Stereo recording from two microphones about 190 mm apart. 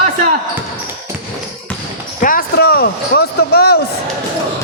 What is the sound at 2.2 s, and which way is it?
A man's voice, 50° left (ahead or behind).